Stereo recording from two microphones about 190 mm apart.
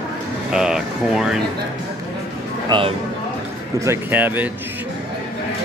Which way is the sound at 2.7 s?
30° right (ahead or behind).